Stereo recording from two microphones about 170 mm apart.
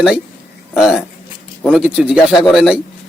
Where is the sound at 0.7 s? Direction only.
5° right (ahead or behind).